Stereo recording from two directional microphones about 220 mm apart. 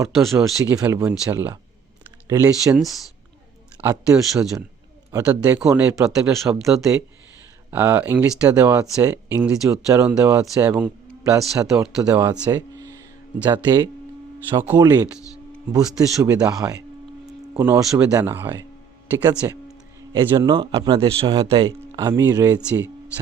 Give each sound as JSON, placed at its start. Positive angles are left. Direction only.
{"t": 0.1, "sound": "speech", "side_deg": 0}
{"t": 0.6, "sound": "speech", "side_deg": -10}
{"t": 3.8, "sound": "speech", "side_deg": -5}